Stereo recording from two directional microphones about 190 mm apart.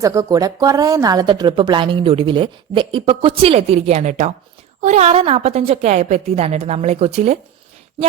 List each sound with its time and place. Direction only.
0.0 s a woman's voice: 15° right (ahead or behind); by 7.3 s 35° right (ahead or behind)